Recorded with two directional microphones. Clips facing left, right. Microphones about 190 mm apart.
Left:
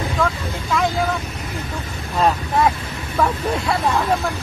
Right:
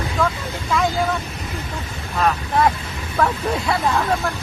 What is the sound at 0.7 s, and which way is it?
Speech, centre (ahead or behind).